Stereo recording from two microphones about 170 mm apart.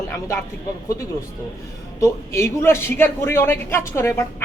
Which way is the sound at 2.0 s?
15° left (ahead or behind).